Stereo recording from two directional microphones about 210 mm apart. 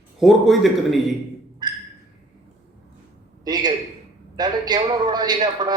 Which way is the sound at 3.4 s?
20° right (ahead or behind).